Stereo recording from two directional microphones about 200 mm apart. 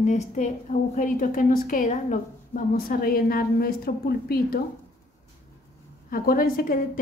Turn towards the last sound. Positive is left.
turn(degrees=45)  # may be behind; listen again after turning